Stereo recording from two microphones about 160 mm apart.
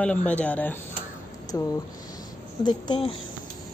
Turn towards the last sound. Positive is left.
turn(degrees=25)  # may be behind; listen again after turning